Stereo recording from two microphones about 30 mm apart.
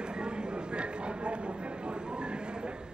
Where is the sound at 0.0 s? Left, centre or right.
Right.